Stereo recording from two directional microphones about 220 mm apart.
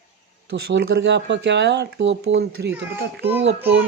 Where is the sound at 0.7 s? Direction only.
50° right (ahead or behind).